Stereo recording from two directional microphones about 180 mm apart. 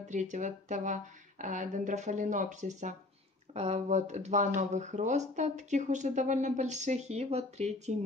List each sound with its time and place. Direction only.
0.1 s speech: 40° right (ahead or behind)